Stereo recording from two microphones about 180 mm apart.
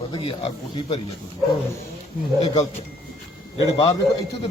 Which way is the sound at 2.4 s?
35° left (ahead or behind).